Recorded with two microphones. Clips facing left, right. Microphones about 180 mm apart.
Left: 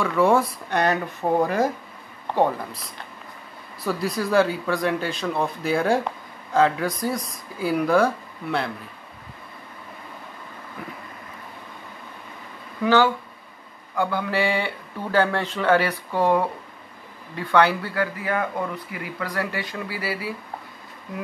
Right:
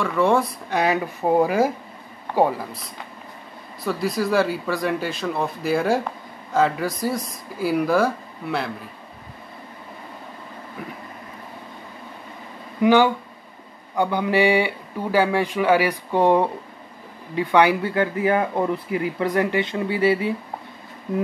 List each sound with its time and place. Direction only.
0.0 s speech: centre (ahead or behind)
12.8 s speech: 15° right (ahead or behind)